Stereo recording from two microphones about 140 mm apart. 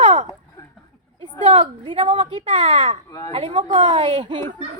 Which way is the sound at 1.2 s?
40° right (ahead or behind).